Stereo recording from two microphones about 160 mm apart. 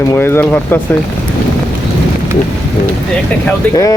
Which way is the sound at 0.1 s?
15° left (ahead or behind).